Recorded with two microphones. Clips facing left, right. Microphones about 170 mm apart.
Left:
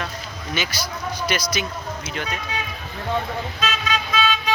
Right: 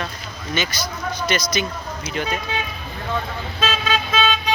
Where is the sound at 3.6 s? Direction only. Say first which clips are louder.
Right 5 dB; 30° right (ahead or behind).